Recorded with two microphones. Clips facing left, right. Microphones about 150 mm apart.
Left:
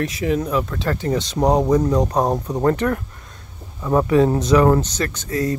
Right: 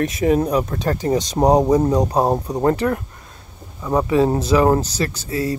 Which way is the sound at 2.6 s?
25° right (ahead or behind).